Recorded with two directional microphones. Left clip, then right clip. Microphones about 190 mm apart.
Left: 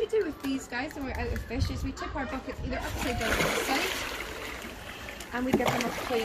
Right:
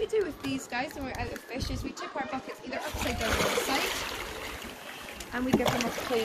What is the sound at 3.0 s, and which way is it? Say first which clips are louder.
Speech: left 1 dB; 20° right (ahead or behind).